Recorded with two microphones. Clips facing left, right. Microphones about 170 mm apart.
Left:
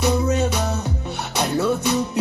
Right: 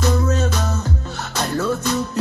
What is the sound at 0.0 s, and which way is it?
Music, 15° left (ahead or behind).